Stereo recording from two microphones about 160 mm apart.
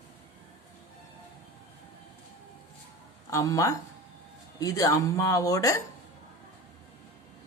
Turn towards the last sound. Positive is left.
turn(degrees=20)  # may be behind; listen again after turning